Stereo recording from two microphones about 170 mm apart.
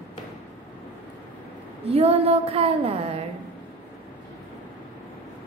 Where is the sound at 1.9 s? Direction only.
35° right (ahead or behind).